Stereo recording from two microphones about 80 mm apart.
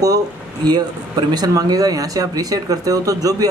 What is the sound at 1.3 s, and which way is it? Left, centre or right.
Speech, right.